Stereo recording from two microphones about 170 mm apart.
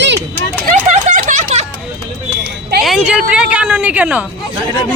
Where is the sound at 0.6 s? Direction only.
50° right (ahead or behind).